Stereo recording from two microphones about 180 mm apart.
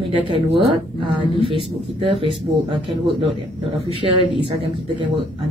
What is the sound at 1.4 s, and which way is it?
Speech, 30° right (ahead or behind).